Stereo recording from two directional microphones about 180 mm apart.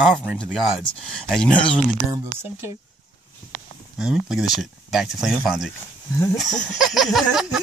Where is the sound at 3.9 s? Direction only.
5° right (ahead or behind).